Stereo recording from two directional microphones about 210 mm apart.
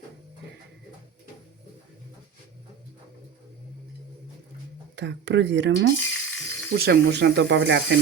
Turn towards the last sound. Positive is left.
turn(degrees=-55)  # may be behind; listen again after turning